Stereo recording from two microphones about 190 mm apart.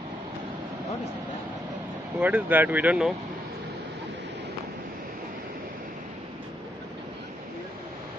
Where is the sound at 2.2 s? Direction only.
10° right (ahead or behind).